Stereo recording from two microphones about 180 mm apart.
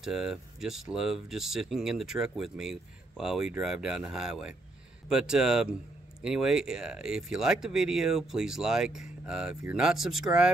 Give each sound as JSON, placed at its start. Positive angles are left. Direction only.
{"t": 0.0, "sound": "speech", "side_deg": -5}